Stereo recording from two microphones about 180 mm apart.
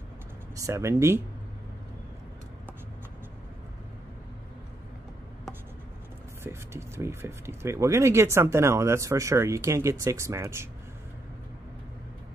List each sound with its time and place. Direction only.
0.6 s speech: 15° right (ahead or behind)
6.4 s speech: 15° right (ahead or behind)